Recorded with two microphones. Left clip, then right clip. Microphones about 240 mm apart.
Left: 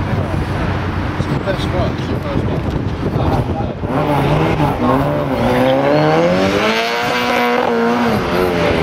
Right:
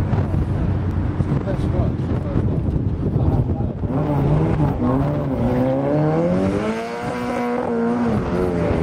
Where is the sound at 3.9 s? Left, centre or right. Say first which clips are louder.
Left 7 dB; centre.